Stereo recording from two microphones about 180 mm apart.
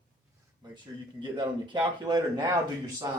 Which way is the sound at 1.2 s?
25° right (ahead or behind).